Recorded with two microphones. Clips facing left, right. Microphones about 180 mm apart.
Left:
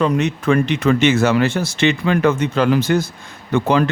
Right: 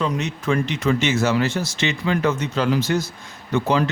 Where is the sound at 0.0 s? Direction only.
60° left (ahead or behind).